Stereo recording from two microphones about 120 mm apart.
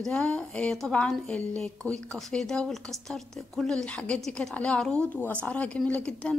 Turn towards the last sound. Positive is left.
turn(degrees=10)  # may be behind; listen again after turning